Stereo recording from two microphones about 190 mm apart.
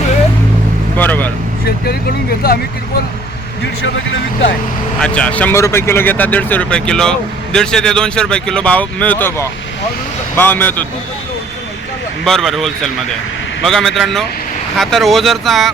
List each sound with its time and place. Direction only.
0.9 s vehicle: 10° left (ahead or behind)
1.6 s speech: 55° left (ahead or behind)
4.9 s speech: 5° left (ahead or behind)
12.2 s speech: centre (ahead or behind)